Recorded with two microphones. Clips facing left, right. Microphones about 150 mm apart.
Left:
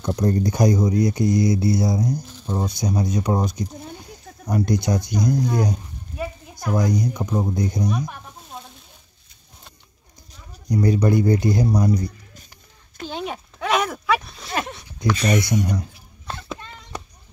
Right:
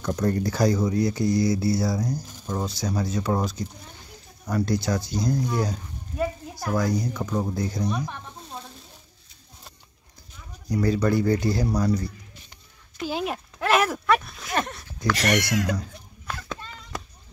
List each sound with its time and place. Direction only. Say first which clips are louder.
0.0 s speech: left 3 dB; 20° left (ahead or behind)
5.6 s a sound: left 4 dB; 15° left (ahead or behind)
6.7 s speech: left 3 dB; 15° left (ahead or behind)
10.7 s speech: left 3 dB; 15° left (ahead or behind)
13.0 s a sound: right 1 dB; 5° right (ahead or behind)
15.1 s speech: left 2 dB; 80° right